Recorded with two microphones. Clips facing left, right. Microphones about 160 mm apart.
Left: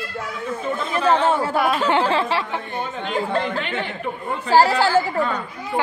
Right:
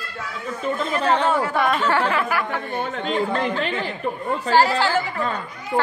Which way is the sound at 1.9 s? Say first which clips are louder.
Left 2 dB; 25° left (ahead or behind).